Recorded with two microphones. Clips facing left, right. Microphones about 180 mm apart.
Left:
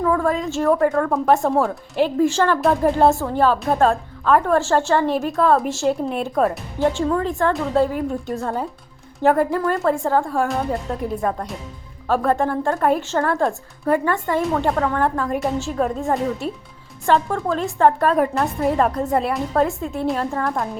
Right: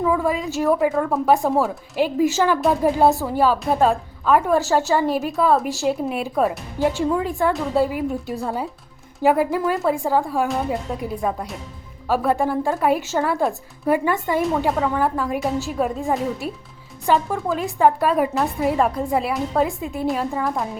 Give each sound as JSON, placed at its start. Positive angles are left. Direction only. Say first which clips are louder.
{"t": 0.0, "sound": "speech", "louder": "left 1 dB", "side_deg": -5}